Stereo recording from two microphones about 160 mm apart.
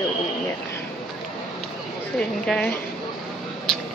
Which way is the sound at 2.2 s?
5° left (ahead or behind).